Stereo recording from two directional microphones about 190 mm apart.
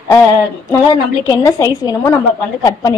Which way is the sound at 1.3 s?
15° left (ahead or behind).